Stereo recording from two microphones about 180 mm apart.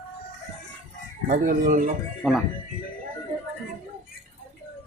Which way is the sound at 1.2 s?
45° right (ahead or behind).